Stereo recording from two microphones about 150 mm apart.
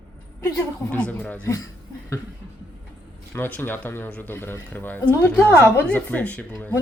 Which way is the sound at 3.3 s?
15° left (ahead or behind).